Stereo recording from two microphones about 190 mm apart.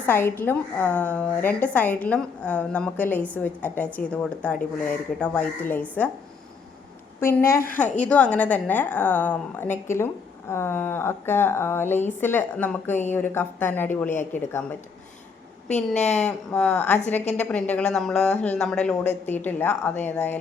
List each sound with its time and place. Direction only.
0.0 s speech: 10° left (ahead or behind)
7.2 s speech: 10° left (ahead or behind)
16.0 s speech: 35° left (ahead or behind)
16.5 s speech: 5° left (ahead or behind)